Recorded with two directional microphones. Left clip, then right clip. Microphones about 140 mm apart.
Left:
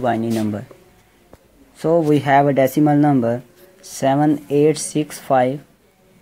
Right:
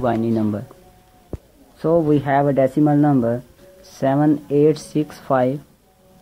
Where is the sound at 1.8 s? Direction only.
10° left (ahead or behind).